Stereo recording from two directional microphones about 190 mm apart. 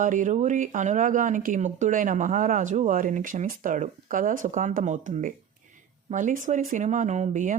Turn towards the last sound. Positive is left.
turn(degrees=-40)  # may be behind; listen again after turning